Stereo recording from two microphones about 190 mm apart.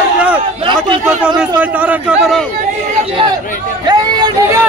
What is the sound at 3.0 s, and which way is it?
Chatter, 30° right (ahead or behind).